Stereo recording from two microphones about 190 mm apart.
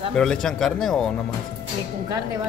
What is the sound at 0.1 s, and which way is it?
A man's voice, 5° left (ahead or behind).